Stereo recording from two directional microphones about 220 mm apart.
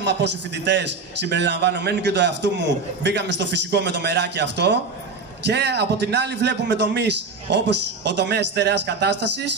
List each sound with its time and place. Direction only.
0.0 s a man's voice: 50° right (ahead or behind)